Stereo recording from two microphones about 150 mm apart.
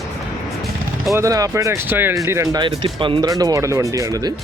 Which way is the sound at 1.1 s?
20° right (ahead or behind).